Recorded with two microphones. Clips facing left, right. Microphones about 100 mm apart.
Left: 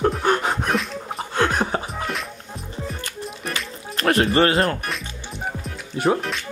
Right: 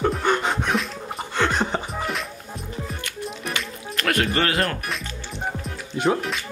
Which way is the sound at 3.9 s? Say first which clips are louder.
Left 5 dB; 30° left (ahead or behind).